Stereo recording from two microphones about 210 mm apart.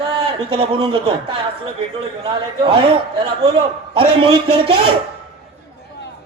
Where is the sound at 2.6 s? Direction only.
25° right (ahead or behind).